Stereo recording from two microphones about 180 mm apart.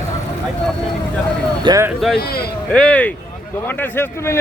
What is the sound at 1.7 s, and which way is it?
Speech, 15° right (ahead or behind).